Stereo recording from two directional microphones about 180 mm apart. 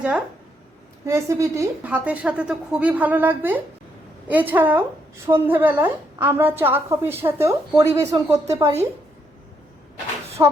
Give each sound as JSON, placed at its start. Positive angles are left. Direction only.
{"t": 1.0, "sound": "a woman's voice", "side_deg": -15}
{"t": 10.4, "sound": "a woman's voice", "side_deg": -15}